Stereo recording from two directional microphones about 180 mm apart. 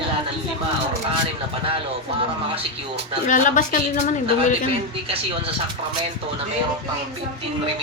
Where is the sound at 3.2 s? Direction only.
45° left (ahead or behind).